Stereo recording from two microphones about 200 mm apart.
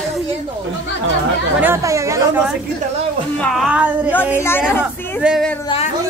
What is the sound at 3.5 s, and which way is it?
Speech, centre (ahead or behind).